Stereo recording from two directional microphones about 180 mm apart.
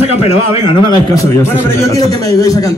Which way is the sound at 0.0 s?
35° left (ahead or behind).